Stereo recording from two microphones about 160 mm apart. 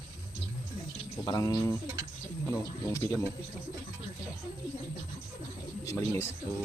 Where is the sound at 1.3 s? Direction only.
20° left (ahead or behind).